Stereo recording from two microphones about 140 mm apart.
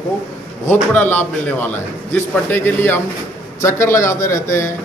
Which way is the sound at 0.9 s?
10° left (ahead or behind).